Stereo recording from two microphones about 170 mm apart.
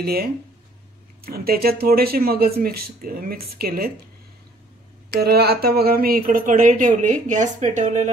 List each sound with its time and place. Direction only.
0.0 s speech: 65° right (ahead or behind)
5.2 s speech: 70° right (ahead or behind); by 8.1 s 45° right (ahead or behind)